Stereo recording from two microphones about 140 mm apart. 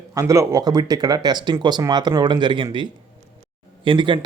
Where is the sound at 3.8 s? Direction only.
35° right (ahead or behind).